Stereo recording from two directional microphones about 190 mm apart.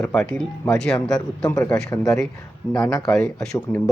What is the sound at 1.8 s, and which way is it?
Speech, 15° left (ahead or behind).